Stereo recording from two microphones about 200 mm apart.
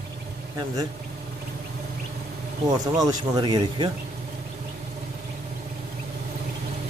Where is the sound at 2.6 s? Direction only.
20° right (ahead or behind).